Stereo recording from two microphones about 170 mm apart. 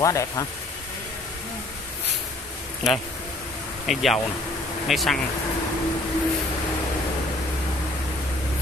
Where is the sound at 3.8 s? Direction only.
Centre (ahead or behind).